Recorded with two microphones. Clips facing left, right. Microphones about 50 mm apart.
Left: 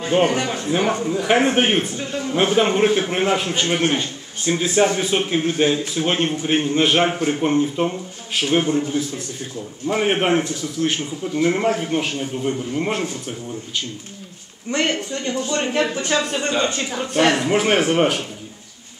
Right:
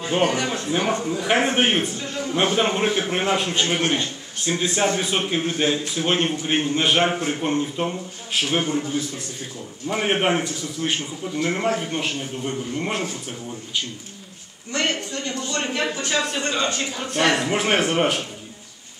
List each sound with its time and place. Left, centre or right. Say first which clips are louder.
0.2 s a man's voice: even; centre
0.6 s a man's voice: left 3 dB; centre
14.7 s a man's voice: left 3 dB; centre
16.3 s a man's voice: left 3 dB; centre
17.2 s a man's voice: left 3 dB; centre